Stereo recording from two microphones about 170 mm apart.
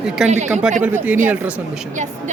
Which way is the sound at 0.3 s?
45° right (ahead or behind).